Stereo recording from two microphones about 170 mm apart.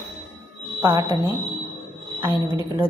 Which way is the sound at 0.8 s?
20° right (ahead or behind).